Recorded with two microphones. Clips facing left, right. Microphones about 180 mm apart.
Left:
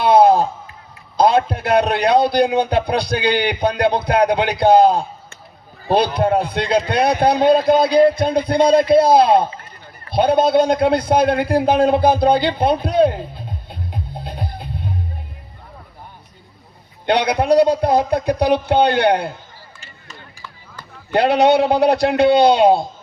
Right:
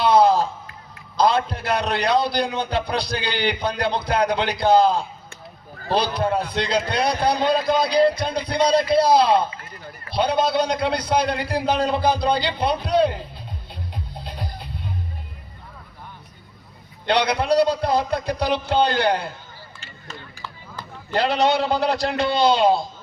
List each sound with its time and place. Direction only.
0.0 s a sound: 55° left (ahead or behind)
1.1 s a man's voice: 55° left (ahead or behind)
13.7 s music: 50° left (ahead or behind)
17.1 s a man's voice: 50° left (ahead or behind)
21.1 s a man's voice: 60° left (ahead or behind)